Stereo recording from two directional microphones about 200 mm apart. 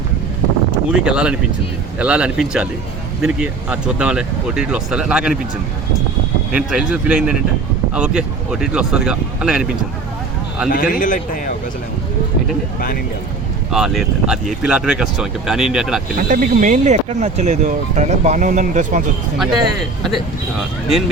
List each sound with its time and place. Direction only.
0.9 s speech: 5° right (ahead or behind)
6.5 s speech: 5° right (ahead or behind)
10.7 s a man's voice: 45° left (ahead or behind)
13.7 s speech: centre (ahead or behind)
16.1 s speech: 40° right (ahead or behind)
19.4 s speech: centre (ahead or behind)